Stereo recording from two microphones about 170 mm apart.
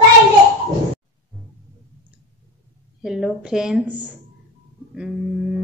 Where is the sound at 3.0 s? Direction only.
5° right (ahead or behind).